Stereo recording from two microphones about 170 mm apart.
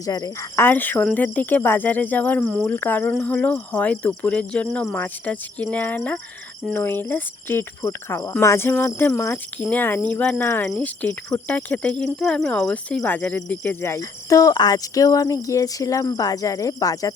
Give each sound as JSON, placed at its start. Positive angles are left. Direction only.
{"t": 0.0, "sound": "speech", "side_deg": 20}